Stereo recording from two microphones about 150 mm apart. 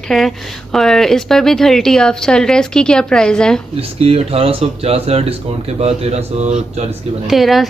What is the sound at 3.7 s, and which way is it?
Speech, 40° right (ahead or behind).